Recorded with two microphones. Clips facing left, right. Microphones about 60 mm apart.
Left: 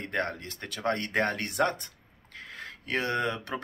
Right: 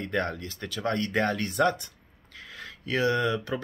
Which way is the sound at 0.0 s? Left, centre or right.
Left.